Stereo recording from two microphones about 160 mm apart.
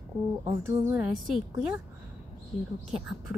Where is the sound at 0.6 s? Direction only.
15° right (ahead or behind).